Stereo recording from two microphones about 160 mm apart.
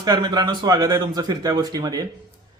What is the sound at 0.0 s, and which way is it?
A man's voice, 25° right (ahead or behind).